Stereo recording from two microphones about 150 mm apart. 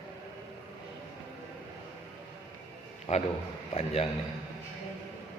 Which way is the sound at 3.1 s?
45° left (ahead or behind).